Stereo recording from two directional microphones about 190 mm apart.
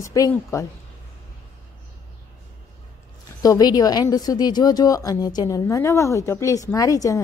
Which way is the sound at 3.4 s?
20° left (ahead or behind).